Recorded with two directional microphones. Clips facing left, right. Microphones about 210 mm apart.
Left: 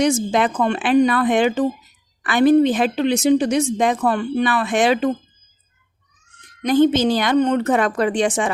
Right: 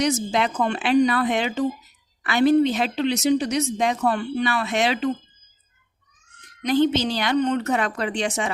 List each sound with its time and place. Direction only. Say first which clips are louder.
0.0 s a woman's voice: left 4 dB; 50° left (ahead or behind)
6.6 s a woman's voice: left 5 dB; 50° left (ahead or behind)